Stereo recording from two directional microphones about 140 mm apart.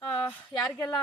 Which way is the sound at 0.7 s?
25° left (ahead or behind).